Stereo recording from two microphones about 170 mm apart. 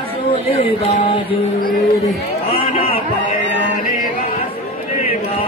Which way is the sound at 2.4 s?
35° left (ahead or behind).